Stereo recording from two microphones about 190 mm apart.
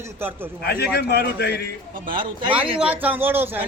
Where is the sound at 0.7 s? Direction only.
55° left (ahead or behind).